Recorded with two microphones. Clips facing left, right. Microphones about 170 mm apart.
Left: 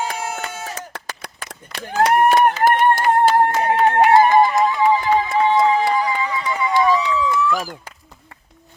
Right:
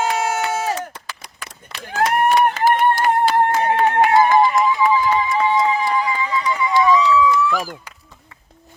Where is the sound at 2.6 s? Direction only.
50° left (ahead or behind).